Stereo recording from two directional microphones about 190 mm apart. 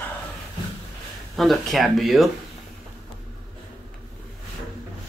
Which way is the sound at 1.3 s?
Centre (ahead or behind).